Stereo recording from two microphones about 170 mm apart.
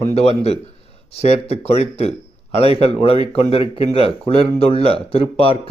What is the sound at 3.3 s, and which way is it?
Speech, 35° left (ahead or behind).